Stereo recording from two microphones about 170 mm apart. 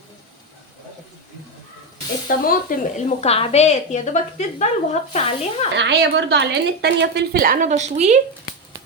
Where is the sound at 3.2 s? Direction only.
35° left (ahead or behind).